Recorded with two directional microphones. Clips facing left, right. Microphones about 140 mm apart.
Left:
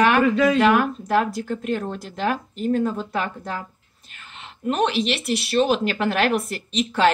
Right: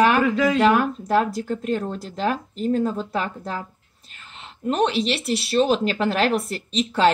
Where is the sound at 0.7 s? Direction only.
35° right (ahead or behind).